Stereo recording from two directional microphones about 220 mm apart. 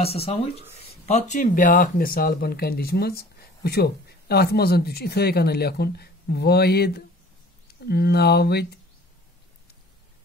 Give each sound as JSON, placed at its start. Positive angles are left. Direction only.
{"t": 0.0, "sound": "speech", "side_deg": 25}